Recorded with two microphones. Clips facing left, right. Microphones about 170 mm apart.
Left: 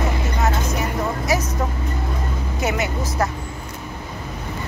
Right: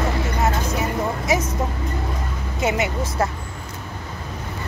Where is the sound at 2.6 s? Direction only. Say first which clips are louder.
Right 2 dB; 25° right (ahead or behind).